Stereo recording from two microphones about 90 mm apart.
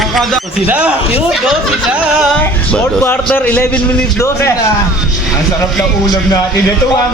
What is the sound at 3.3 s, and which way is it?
Speech, 15° left (ahead or behind).